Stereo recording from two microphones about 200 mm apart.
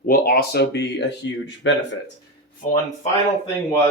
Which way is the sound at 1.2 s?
70° left (ahead or behind).